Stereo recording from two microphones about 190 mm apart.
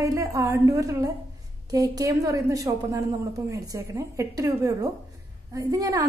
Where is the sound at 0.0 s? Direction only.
15° right (ahead or behind).